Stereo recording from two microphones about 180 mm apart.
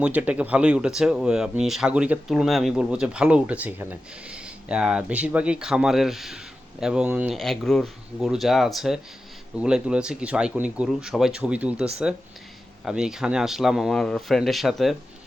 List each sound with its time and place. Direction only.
0.0 s speech: 10° right (ahead or behind)